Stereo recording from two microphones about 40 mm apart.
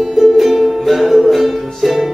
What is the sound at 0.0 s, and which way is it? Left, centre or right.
Music, centre.